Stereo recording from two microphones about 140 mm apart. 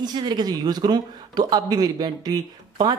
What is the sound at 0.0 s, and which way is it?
Speech, 30° right (ahead or behind).